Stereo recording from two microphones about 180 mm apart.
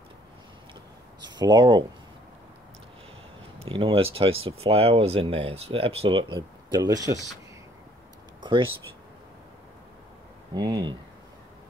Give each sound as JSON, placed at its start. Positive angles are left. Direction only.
{"t": 1.3, "sound": "speech", "side_deg": -25}
{"t": 3.5, "sound": "speech", "side_deg": -30}
{"t": 8.4, "sound": "a sound", "side_deg": -25}
{"t": 10.5, "sound": "speech", "side_deg": -25}